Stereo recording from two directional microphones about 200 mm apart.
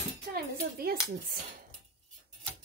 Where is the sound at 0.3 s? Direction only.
50° right (ahead or behind).